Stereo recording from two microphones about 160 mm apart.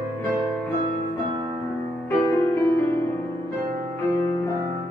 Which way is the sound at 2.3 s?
15° left (ahead or behind).